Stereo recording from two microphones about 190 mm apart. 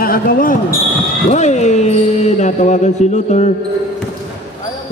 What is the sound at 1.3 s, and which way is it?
Speech, 35° left (ahead or behind).